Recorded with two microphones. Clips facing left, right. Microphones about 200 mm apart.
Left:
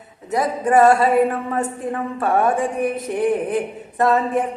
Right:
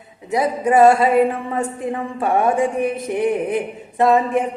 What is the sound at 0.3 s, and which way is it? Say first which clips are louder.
A woman's voice: right 1 dB; 10° right (ahead or behind).